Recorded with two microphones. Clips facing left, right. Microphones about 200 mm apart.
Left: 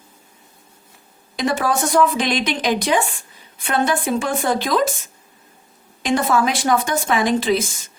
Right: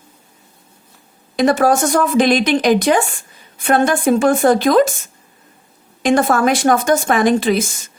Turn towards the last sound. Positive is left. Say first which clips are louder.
# right 4 dB
turn(degrees=-50)  # may be behind; listen again after turning